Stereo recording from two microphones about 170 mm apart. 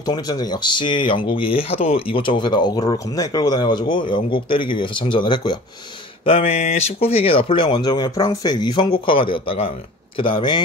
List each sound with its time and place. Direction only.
0.0 s speech: 25° left (ahead or behind)